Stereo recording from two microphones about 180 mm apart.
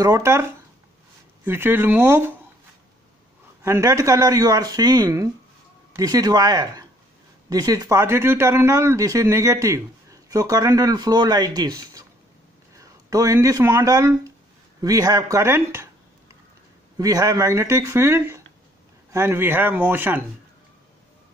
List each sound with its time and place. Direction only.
0.0 s speech: 15° right (ahead or behind)
3.6 s speech: 15° right (ahead or behind)
16.9 s speech: 20° right (ahead or behind)